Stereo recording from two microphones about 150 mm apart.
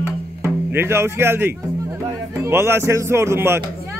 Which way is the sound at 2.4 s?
15° right (ahead or behind).